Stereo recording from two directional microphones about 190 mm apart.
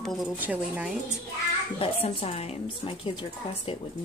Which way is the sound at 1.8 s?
30° left (ahead or behind).